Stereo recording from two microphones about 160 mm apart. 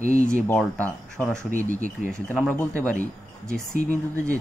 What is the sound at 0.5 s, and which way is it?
Speech, 5° left (ahead or behind).